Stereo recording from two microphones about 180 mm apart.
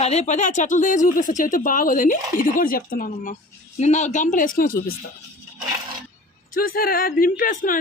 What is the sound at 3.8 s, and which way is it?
A woman's voice, 40° left (ahead or behind).